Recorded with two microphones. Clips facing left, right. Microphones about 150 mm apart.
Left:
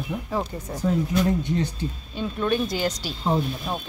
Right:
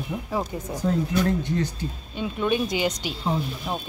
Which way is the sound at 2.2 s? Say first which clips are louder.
Even; 15° right (ahead or behind).